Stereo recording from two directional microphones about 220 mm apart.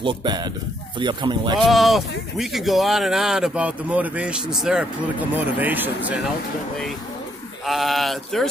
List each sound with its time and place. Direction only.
0.0 s speech: 20° right (ahead or behind)
1.6 s speech: centre (ahead or behind)
7.6 s speech: centre (ahead or behind)